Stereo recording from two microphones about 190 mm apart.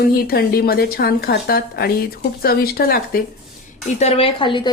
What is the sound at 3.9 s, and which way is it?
Speech, 35° left (ahead or behind).